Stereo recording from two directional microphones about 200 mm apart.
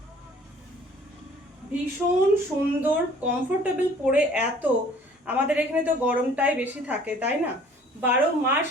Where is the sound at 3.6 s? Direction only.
10° right (ahead or behind).